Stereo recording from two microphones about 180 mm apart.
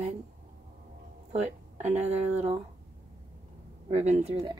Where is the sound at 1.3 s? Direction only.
40° right (ahead or behind).